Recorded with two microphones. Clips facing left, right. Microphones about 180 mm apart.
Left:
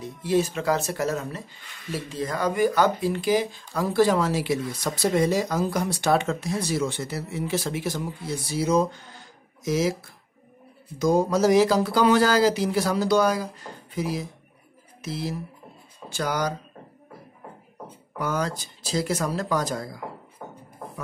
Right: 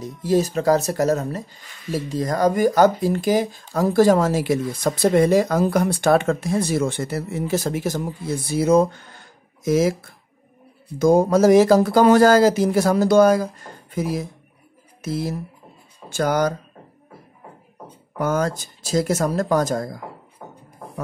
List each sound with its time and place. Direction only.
0.0 s speech: 40° right (ahead or behind)
18.1 s speech: 45° right (ahead or behind)